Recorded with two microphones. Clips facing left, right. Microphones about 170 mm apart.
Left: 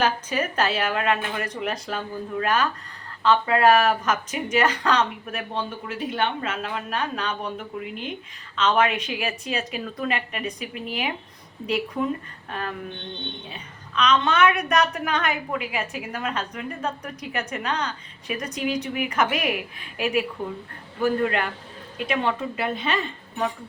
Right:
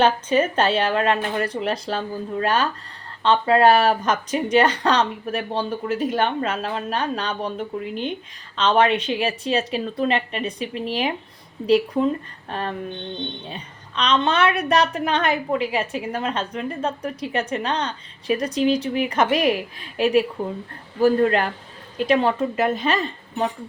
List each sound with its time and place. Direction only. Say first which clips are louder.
0.0 s speech: right 6 dB; 30° right (ahead or behind)